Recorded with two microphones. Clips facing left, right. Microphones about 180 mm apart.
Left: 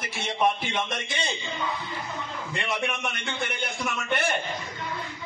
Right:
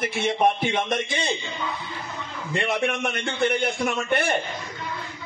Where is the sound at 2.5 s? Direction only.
55° right (ahead or behind).